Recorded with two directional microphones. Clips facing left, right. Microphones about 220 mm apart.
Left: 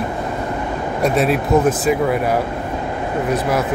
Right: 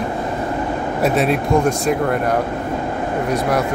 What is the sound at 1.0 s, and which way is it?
Speech, centre (ahead or behind).